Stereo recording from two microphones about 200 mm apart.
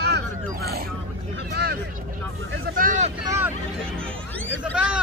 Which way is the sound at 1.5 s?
55° right (ahead or behind).